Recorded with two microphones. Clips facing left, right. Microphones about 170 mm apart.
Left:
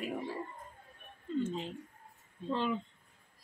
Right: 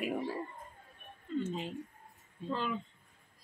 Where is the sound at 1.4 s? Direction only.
5° right (ahead or behind).